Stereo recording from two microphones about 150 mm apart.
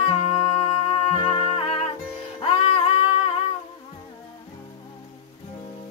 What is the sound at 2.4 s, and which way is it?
Singing, 40° left (ahead or behind).